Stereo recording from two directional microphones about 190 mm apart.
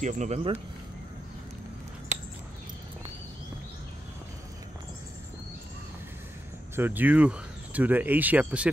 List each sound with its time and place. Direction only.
0.0 s speech: 40° right (ahead or behind)
6.7 s speech: 10° right (ahead or behind)